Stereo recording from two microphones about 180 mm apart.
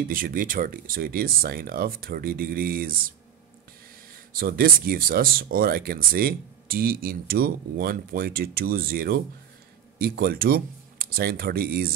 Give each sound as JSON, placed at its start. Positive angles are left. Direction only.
{"t": 0.1, "sound": "speech", "side_deg": -50}
{"t": 4.3, "sound": "speech", "side_deg": -55}